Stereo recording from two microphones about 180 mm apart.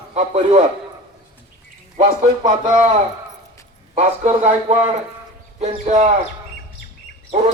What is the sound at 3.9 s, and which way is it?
A man's voice, 40° right (ahead or behind).